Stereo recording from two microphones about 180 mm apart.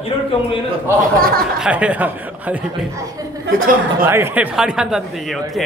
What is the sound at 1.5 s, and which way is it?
Speech, 5° right (ahead or behind).